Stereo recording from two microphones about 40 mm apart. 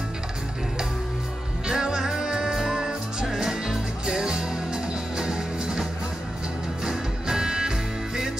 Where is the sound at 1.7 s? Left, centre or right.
Centre.